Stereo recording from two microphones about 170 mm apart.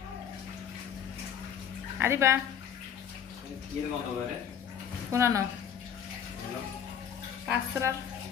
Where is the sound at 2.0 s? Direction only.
15° right (ahead or behind).